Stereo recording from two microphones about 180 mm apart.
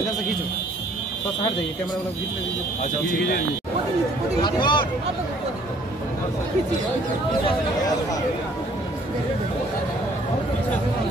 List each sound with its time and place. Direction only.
4.4 s speech: 25° left (ahead or behind)